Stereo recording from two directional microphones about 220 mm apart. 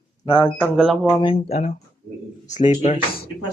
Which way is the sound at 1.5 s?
35° left (ahead or behind).